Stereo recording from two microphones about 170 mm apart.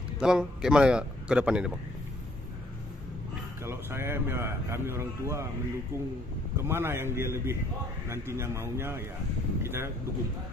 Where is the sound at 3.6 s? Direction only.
15° right (ahead or behind).